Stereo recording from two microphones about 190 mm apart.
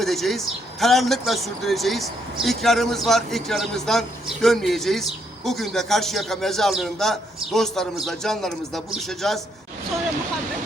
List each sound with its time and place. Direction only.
0.0 s speech: centre (ahead or behind)